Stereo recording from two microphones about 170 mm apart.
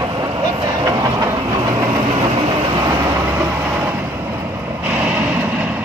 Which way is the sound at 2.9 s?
15° right (ahead or behind).